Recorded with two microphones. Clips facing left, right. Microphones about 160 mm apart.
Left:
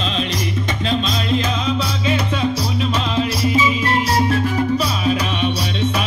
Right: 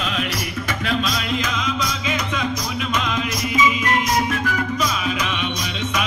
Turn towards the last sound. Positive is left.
turn(degrees=35)  # may be behind; listen again after turning